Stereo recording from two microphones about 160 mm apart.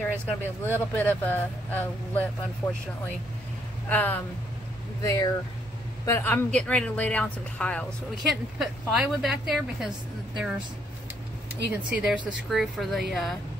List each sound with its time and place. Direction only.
0.0 s speech: 10° left (ahead or behind)
3.9 s speech: 10° left (ahead or behind)
5.0 s a woman's voice: 20° left (ahead or behind); by 10.5 s 5° right (ahead or behind)
11.7 s a woman's voice: 5° right (ahead or behind)